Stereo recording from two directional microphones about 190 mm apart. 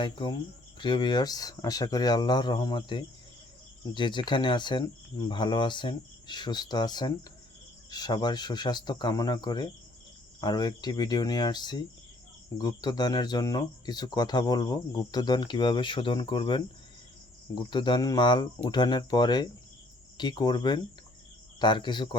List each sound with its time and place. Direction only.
0.0 s speech: 25° left (ahead or behind)